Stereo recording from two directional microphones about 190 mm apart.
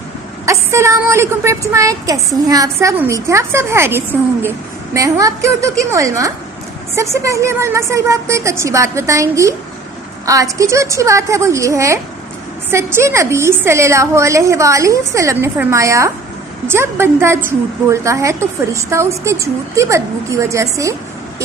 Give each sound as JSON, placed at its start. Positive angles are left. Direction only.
{"t": 0.4, "sound": "a woman's voice", "side_deg": -15}